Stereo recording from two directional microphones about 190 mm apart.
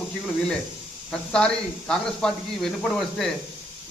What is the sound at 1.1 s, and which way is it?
A man's voice, 5° left (ahead or behind).